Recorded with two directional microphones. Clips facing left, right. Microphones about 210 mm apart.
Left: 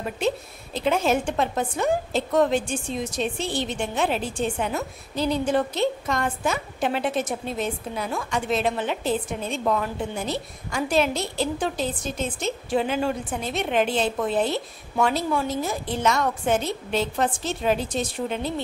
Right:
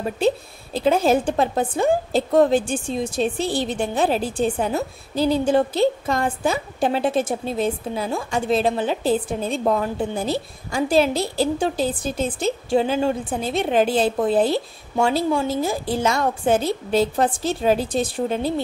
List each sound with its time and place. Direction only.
0.7 s a woman's voice: 35° right (ahead or behind)